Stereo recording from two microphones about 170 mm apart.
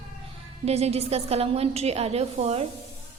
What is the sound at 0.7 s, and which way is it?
A woman's voice, 40° right (ahead or behind).